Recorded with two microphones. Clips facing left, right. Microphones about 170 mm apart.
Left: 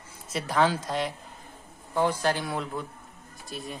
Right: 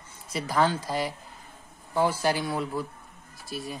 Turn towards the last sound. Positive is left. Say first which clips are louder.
# right 2 dB
turn(degrees=0)  # may be behind; listen again after turning